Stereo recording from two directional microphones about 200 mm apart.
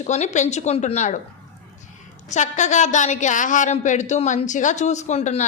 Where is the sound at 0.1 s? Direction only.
35° left (ahead or behind).